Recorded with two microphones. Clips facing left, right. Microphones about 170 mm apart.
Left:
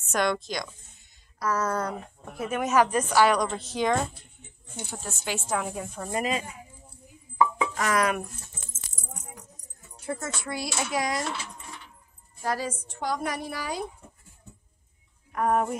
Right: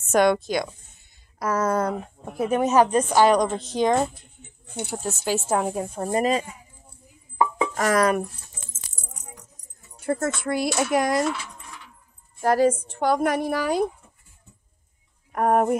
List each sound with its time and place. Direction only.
0.1 s speech: 50° right (ahead or behind)
2.3 s speech: 35° right (ahead or behind)
5.0 s speech: 40° right (ahead or behind)
7.3 s music: 40° right (ahead or behind)
10.0 s a woman's voice: 55° right (ahead or behind)
12.4 s a woman's voice: 55° right (ahead or behind)
15.3 s speech: 50° right (ahead or behind)